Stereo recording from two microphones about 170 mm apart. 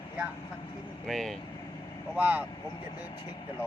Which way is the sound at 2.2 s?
10° right (ahead or behind).